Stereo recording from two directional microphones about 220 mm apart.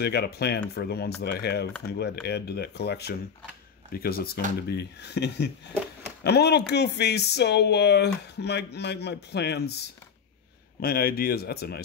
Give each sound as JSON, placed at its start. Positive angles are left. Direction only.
{"t": 0.0, "sound": "speech", "side_deg": 45}
{"t": 10.8, "sound": "speech", "side_deg": 45}